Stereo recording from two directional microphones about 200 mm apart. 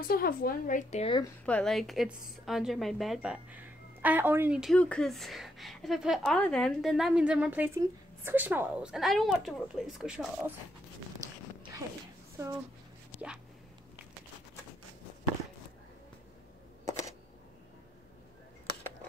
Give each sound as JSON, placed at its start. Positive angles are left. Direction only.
{"t": 0.1, "sound": "a woman's voice", "side_deg": 45}
{"t": 1.4, "sound": "a woman's voice", "side_deg": 5}
{"t": 12.4, "sound": "speech", "side_deg": -15}
{"t": 13.1, "sound": "a sound", "side_deg": -5}